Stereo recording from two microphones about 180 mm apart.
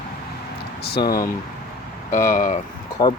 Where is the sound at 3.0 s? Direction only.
20° left (ahead or behind).